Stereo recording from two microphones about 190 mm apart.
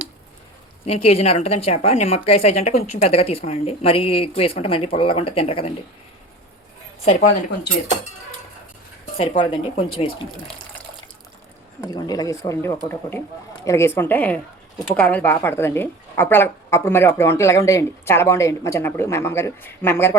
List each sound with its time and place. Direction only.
0.9 s speech: 30° left (ahead or behind)
9.1 s speech: 30° left (ahead or behind)
11.8 s a woman's voice: 20° left (ahead or behind)